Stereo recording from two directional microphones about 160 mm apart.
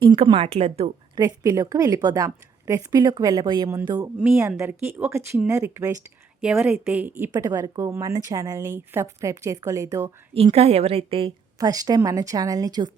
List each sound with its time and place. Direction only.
0.0 s a woman's voice: 30° right (ahead or behind)
1.1 s a woman's voice: 25° right (ahead or behind)
10.3 s a woman's voice: 40° right (ahead or behind)
11.5 s a woman's voice: 20° right (ahead or behind)